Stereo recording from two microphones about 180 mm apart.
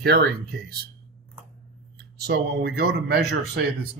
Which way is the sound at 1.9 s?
65° right (ahead or behind).